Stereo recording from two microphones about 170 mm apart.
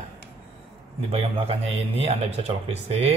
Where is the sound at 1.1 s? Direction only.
35° right (ahead or behind).